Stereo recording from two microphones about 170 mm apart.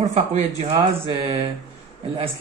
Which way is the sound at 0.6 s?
35° right (ahead or behind).